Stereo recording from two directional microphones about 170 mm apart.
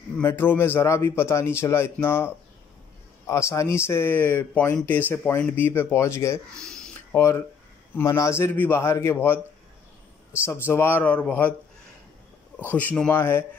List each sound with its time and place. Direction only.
0.2 s speech: 15° left (ahead or behind)
6.5 s a sound: 5° left (ahead or behind)
7.2 s speech: 15° left (ahead or behind)
12.7 s speech: 5° left (ahead or behind)